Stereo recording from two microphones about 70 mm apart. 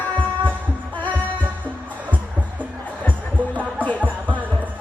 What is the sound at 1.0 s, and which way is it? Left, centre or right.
Music, left.